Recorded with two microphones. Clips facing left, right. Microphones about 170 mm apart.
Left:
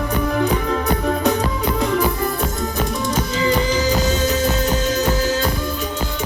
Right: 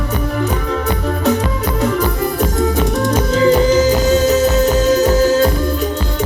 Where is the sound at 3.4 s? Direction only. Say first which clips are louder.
Right 8 dB; 45° right (ahead or behind).